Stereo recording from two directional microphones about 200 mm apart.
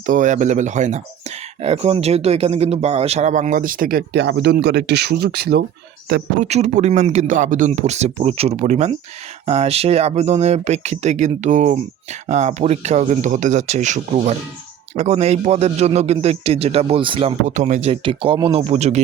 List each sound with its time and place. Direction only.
0.0 s speech: 40° right (ahead or behind)
6.4 s speech: 35° right (ahead or behind)